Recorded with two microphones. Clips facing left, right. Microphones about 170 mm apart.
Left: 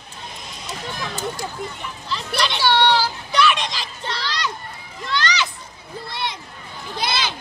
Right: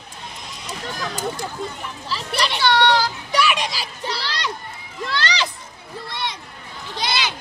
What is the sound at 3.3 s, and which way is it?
Children playing, 10° right (ahead or behind).